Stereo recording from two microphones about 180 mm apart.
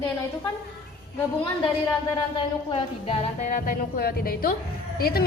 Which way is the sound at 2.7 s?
35° left (ahead or behind).